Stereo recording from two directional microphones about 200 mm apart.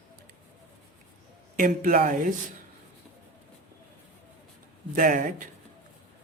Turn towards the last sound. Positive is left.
turn(degrees=-45)  # may be behind; listen again after turning